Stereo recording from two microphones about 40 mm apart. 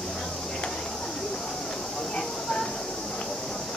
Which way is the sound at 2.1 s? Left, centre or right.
Centre.